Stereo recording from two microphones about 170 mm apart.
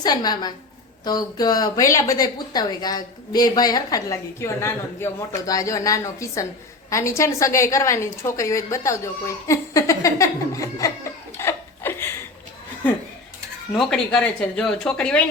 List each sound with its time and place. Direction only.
0.0 s a woman's voice: 25° left (ahead or behind)
11.3 s chuckle: 15° left (ahead or behind)
13.7 s speech: 5° left (ahead or behind)